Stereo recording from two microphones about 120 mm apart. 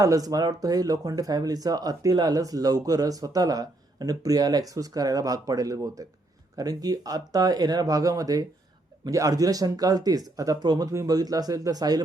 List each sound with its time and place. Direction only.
0.0 s speech: 30° right (ahead or behind)